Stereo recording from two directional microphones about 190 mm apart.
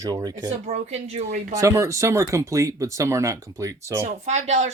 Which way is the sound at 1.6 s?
15° right (ahead or behind).